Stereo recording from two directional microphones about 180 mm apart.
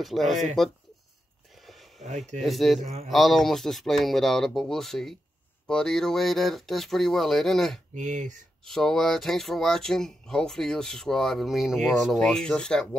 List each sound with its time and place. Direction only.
0.0 s speech: centre (ahead or behind)
1.5 s a sound: centre (ahead or behind)
2.0 s speech: 40° right (ahead or behind)
2.4 s speech: centre (ahead or behind)
2.8 s speech: 35° right (ahead or behind)
3.1 s speech: centre (ahead or behind)
7.9 s speech: 45° right (ahead or behind)
8.6 s speech: centre (ahead or behind)